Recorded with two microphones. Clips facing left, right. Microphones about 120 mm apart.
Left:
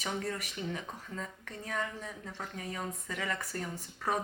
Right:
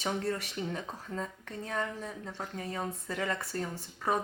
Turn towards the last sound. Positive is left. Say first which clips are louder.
# right 2 dB
turn(degrees=-25)  # may be behind; listen again after turning